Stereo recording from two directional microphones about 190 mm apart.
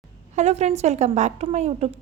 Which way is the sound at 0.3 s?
35° right (ahead or behind).